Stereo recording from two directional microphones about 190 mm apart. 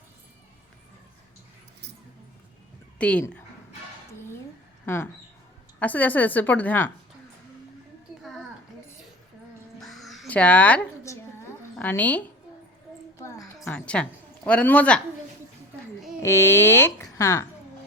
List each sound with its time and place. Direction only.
3.0 s speech: 5° left (ahead or behind)
5.8 s speech: 10° left (ahead or behind)
9.8 s a sound: centre (ahead or behind)
11.8 s speech: 10° left (ahead or behind)
13.4 s a sound: 5° left (ahead or behind)
16.2 s speech: 15° left (ahead or behind)